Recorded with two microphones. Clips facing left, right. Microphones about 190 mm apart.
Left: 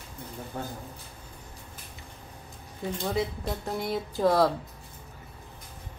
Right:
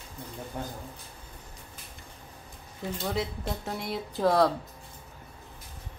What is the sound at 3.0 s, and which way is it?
Speech, centre (ahead or behind).